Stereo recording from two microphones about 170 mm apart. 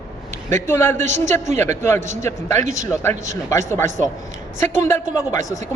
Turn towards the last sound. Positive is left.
turn(degrees=20)  # may be behind; listen again after turning